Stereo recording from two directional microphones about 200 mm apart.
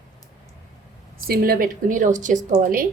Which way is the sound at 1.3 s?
50° right (ahead or behind).